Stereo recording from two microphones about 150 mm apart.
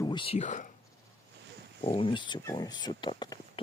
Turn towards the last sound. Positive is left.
turn(degrees=30)  # may be behind; listen again after turning